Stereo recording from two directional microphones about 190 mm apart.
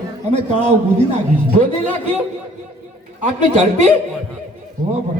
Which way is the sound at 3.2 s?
35° right (ahead or behind).